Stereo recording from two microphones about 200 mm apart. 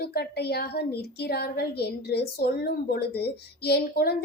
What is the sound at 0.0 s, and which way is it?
A woman's voice, 50° left (ahead or behind).